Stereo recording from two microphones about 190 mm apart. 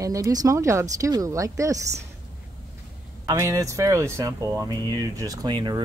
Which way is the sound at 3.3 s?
15° right (ahead or behind).